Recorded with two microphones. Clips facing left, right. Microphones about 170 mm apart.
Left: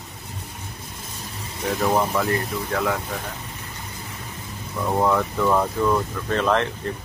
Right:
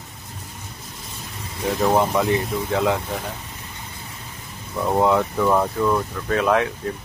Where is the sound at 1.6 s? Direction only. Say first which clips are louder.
Right 2 dB; 15° right (ahead or behind).